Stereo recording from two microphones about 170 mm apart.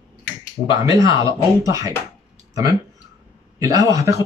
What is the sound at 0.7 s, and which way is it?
Speech, 20° right (ahead or behind).